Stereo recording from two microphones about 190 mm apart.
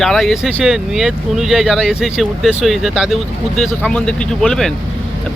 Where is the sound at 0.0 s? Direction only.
Centre (ahead or behind).